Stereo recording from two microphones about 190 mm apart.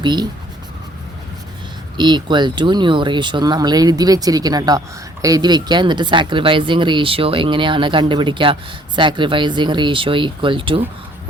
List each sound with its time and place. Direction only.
0.0 s speech: 25° right (ahead or behind)
2.0 s speech: 25° right (ahead or behind)